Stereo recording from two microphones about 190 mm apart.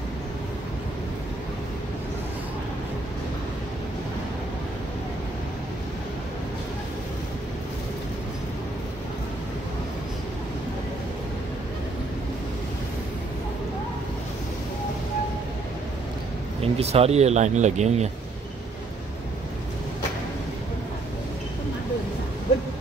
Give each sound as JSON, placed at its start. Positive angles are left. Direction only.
{"t": 16.6, "sound": "speech", "side_deg": -30}